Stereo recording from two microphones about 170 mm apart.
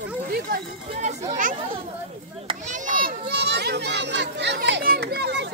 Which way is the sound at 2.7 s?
55° right (ahead or behind).